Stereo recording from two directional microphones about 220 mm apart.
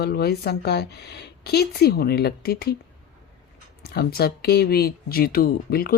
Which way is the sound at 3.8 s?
45° left (ahead or behind).